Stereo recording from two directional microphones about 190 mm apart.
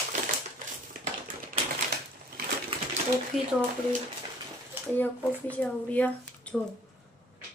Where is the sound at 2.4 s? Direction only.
55° right (ahead or behind).